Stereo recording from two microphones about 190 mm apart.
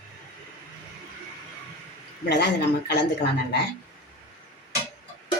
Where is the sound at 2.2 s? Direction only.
60° left (ahead or behind).